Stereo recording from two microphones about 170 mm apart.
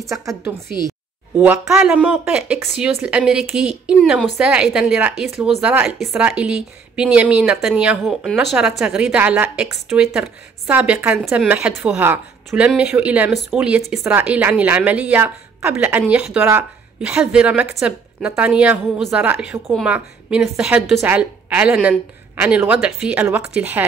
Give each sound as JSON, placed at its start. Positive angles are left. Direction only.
{"t": 0.0, "sound": "a woman's voice", "side_deg": -20}